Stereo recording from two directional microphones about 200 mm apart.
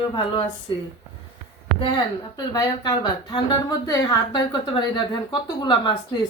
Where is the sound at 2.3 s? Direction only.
20° left (ahead or behind).